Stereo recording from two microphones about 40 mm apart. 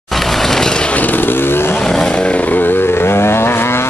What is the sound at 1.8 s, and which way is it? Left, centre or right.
Vehicle, centre.